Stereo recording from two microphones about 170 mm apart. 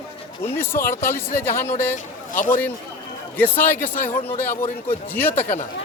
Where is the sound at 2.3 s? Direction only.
50° left (ahead or behind).